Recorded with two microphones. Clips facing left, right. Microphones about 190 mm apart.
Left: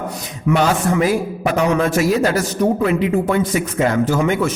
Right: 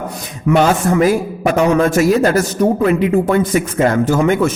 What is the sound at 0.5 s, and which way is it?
A man's voice, 50° right (ahead or behind).